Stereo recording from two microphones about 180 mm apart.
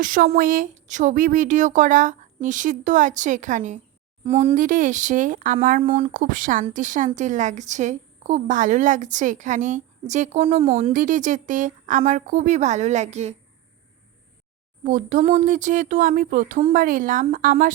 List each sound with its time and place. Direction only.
0.0 s a woman's voice: 50° right (ahead or behind)
5.8 s speech: 35° right (ahead or behind)
6.1 s a woman's voice: 50° right (ahead or behind)
10.9 s a woman's voice: 45° right (ahead or behind)
14.8 s a woman's voice: 45° right (ahead or behind)